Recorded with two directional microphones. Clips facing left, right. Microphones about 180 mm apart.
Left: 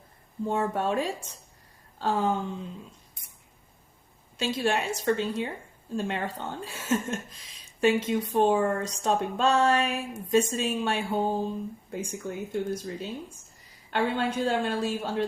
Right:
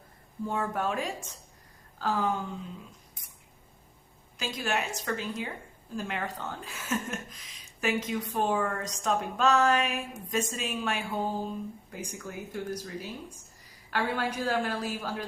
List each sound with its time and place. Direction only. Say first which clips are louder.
0.4 s speech: left 4 dB; 25° left (ahead or behind)
4.4 s speech: left 5 dB; 30° left (ahead or behind)